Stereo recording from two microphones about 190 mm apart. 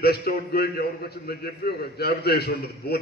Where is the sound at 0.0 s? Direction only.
55° left (ahead or behind).